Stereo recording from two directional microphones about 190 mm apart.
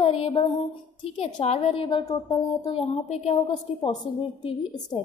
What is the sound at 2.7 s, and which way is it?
A woman's voice, 30° left (ahead or behind).